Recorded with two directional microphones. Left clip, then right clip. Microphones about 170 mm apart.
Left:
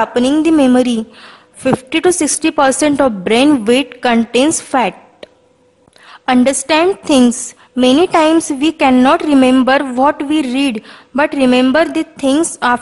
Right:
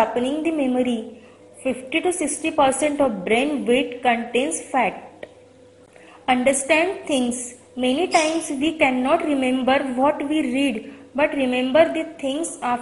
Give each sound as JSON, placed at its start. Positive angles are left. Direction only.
{"t": 0.6, "sound": "a woman's voice", "side_deg": 35}